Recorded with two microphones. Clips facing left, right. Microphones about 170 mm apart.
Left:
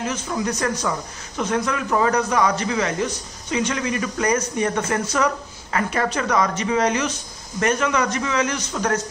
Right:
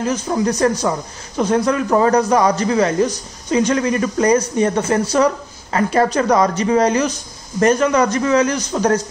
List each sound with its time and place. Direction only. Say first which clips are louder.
0.0 s a man's voice: right 6 dB; 35° right (ahead or behind)